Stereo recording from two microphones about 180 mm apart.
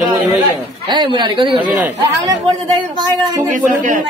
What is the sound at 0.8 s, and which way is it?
Speech, 25° right (ahead or behind).